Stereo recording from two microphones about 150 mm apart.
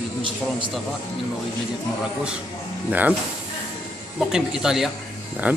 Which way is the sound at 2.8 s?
10° right (ahead or behind).